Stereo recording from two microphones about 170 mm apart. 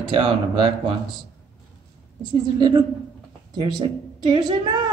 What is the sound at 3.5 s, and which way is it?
A woman's voice, 25° right (ahead or behind).